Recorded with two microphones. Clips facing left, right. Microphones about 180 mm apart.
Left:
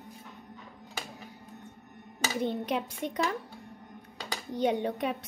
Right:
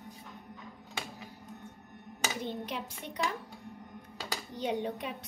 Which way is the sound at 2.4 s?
60° left (ahead or behind).